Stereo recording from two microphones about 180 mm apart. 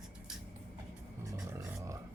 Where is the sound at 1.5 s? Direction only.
15° right (ahead or behind).